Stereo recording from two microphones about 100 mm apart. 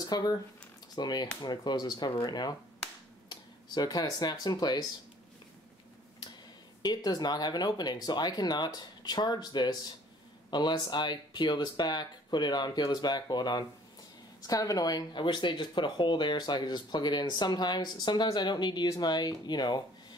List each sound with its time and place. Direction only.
0.0 s speech: 40° left (ahead or behind)
6.8 s speech: 45° left (ahead or behind)